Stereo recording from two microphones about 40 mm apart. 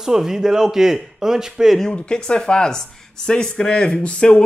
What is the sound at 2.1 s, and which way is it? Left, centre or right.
Speech, left.